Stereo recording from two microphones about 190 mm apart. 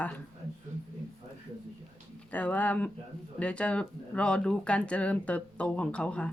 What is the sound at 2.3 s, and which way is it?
Speech, 10° left (ahead or behind).